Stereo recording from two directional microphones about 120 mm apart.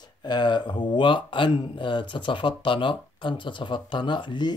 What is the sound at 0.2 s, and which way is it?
A man's voice, 40° left (ahead or behind).